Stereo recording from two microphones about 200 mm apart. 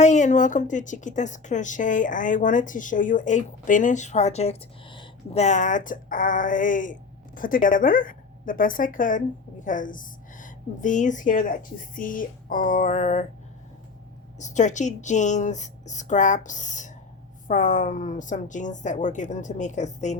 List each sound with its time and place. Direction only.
0.0 s a woman's voice: 35° left (ahead or behind)
14.3 s a woman's voice: 35° left (ahead or behind)